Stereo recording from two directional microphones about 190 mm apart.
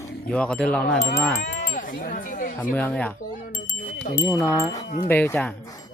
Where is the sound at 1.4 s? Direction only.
60° left (ahead or behind).